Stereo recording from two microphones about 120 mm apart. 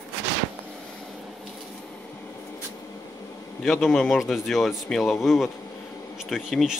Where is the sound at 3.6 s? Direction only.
Centre (ahead or behind).